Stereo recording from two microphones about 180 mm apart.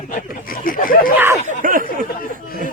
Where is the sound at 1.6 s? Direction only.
50° right (ahead or behind).